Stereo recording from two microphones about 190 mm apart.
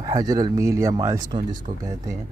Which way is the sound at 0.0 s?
20° right (ahead or behind).